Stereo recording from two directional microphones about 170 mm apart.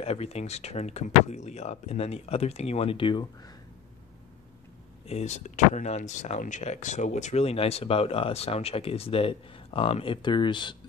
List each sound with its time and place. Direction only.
0.0 s speech: 35° left (ahead or behind)
5.0 s speech: 40° left (ahead or behind)